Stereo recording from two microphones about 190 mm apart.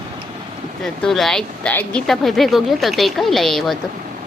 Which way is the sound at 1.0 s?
Centre (ahead or behind).